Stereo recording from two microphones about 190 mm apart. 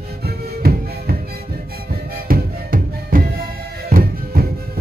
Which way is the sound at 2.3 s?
50° right (ahead or behind).